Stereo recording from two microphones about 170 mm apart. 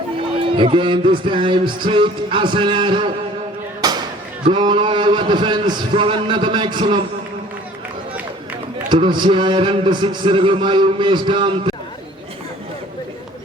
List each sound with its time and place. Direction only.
0.3 s a man's voice: 30° right (ahead or behind)
3.8 s a sound: 25° right (ahead or behind)
4.4 s a man's voice: 25° right (ahead or behind)
8.9 s a man's voice: 25° right (ahead or behind)